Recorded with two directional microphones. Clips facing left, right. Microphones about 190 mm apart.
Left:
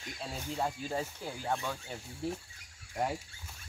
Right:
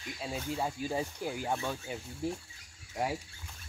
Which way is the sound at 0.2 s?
5° right (ahead or behind).